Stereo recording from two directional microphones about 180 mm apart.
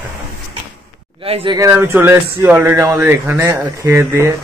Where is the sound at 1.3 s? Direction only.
25° right (ahead or behind).